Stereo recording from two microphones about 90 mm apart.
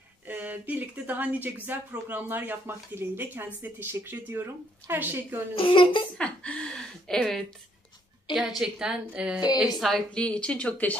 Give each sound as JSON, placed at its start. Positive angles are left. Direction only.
{"t": 0.3, "sound": "speech", "side_deg": -20}
{"t": 5.6, "sound": "a child's voice", "side_deg": 75}
{"t": 6.1, "sound": "speech", "side_deg": 10}
{"t": 8.4, "sound": "a woman's voice", "side_deg": -5}
{"t": 9.8, "sound": "a woman's voice", "side_deg": 0}
{"t": 10.2, "sound": "speech", "side_deg": 10}